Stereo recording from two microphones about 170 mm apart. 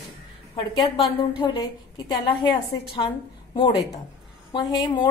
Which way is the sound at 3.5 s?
30° left (ahead or behind).